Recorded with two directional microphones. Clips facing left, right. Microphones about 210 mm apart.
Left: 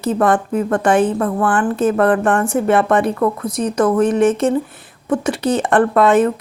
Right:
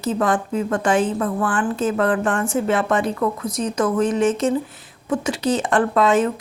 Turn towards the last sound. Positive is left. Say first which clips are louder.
# left 4 dB
turn(degrees=60)  # may be behind; listen again after turning